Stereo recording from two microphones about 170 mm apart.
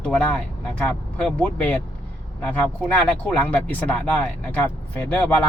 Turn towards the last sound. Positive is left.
turn(degrees=10)  # may be behind; listen again after turning